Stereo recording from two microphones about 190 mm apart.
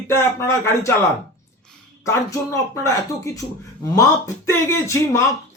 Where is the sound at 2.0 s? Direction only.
15° left (ahead or behind).